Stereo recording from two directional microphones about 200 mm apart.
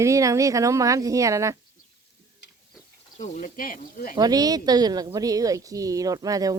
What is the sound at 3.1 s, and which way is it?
Speech, 40° left (ahead or behind).